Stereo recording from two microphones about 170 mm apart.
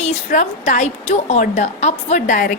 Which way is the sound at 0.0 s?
45° left (ahead or behind).